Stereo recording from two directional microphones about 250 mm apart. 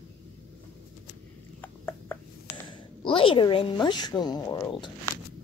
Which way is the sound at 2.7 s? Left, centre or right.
Left.